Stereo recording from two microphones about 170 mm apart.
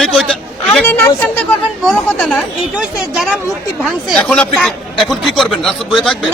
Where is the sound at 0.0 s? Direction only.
Centre (ahead or behind).